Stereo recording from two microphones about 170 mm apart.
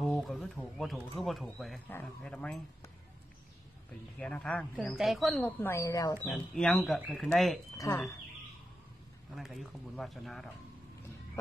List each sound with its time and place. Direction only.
0.0 s speech: centre (ahead or behind)
4.2 s speech: 5° left (ahead or behind)
5.6 s speech: 15° left (ahead or behind)
6.2 s speech: 5° left (ahead or behind)
7.7 s speech: 20° left (ahead or behind)
9.3 s speech: centre (ahead or behind)